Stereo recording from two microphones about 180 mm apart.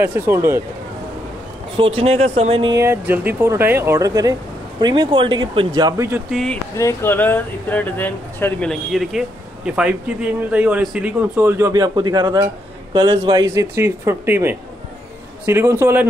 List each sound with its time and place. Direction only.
0.0 s speech: 10° right (ahead or behind)
1.8 s speech: 30° right (ahead or behind)
2.8 s speech: 10° right (ahead or behind)
6.3 s speech: 5° left (ahead or behind)
6.8 s speech: 15° left (ahead or behind); by 16.1 s 10° right (ahead or behind)